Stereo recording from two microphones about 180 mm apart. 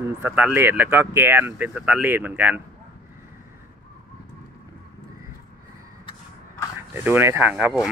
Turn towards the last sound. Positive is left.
turn(degrees=0)  # may be behind; listen again after turning